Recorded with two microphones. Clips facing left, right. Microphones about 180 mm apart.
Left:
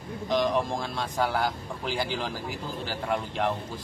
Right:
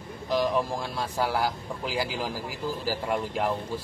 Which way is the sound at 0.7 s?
5° right (ahead or behind).